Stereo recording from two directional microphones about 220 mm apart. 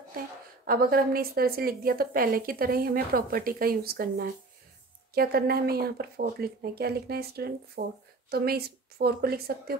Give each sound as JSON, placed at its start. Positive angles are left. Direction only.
{"t": 0.7, "sound": "a woman's voice", "side_deg": -40}